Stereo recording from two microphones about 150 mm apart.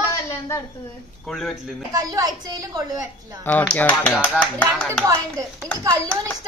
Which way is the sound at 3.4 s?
10° left (ahead or behind).